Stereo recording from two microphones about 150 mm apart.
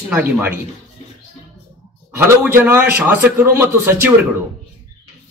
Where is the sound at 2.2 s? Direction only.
15° right (ahead or behind).